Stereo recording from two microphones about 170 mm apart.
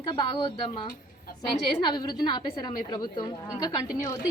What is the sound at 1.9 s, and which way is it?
A woman's voice, 25° left (ahead or behind).